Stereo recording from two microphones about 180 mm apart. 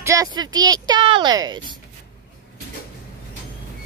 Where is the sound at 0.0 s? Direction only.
15° right (ahead or behind).